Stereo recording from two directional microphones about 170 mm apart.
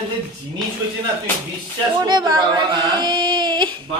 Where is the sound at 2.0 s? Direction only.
25° right (ahead or behind).